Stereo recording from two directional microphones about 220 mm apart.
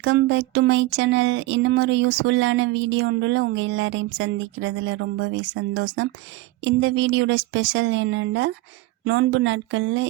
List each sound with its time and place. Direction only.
0.0 s speech: 55° right (ahead or behind)